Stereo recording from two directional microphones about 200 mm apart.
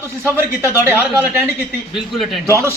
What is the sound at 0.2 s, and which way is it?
A man's voice, 10° right (ahead or behind).